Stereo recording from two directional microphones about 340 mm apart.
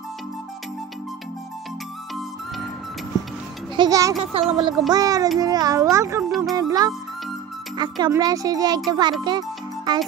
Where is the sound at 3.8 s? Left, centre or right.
Centre.